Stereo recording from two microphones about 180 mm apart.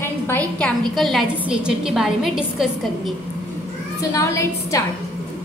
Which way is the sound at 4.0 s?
15° left (ahead or behind).